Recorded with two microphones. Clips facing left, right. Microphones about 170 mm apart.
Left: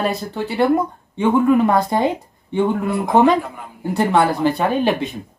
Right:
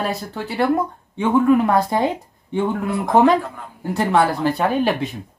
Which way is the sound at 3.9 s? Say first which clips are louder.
Left 1 dB; centre (ahead or behind).